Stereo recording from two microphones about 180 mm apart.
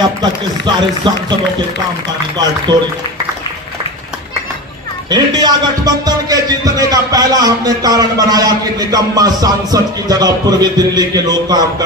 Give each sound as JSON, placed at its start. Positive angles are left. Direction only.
{"t": 0.2, "sound": "speech", "side_deg": -25}
{"t": 2.7, "sound": "speech", "side_deg": -25}
{"t": 5.0, "sound": "speech", "side_deg": -20}